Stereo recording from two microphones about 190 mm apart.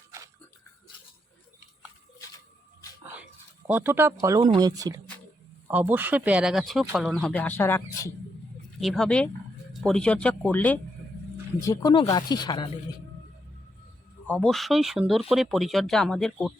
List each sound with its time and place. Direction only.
3.7 s speech: 10° right (ahead or behind); by 8.1 s 10° left (ahead or behind)
8.8 s speech: centre (ahead or behind)
11.6 s speech: 20° left (ahead or behind)
14.3 s speech: 5° left (ahead or behind)